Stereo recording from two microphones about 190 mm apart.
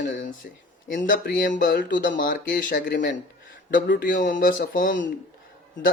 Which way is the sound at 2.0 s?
45° left (ahead or behind).